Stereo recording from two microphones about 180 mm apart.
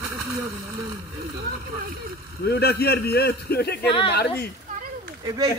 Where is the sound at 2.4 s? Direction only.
65° left (ahead or behind).